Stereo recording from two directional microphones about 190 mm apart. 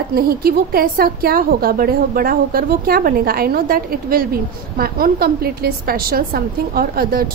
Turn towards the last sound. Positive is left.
turn(degrees=-50)  # may be behind; listen again after turning